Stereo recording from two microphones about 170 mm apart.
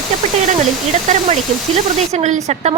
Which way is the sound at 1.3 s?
40° right (ahead or behind).